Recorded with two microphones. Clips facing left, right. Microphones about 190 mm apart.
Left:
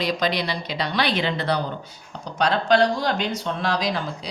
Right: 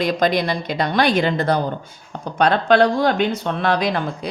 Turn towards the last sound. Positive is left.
turn(degrees=-55)  # may be behind; listen again after turning